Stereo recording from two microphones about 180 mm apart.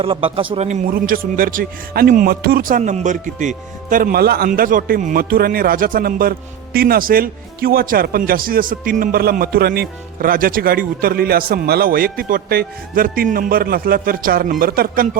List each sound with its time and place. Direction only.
0.0 s speech: 30° right (ahead or behind); by 15.2 s 50° right (ahead or behind)